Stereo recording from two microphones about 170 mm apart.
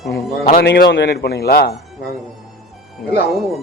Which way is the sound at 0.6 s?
80° left.